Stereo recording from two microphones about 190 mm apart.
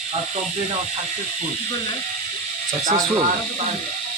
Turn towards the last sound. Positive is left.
turn(degrees=-20)  # may be behind; listen again after turning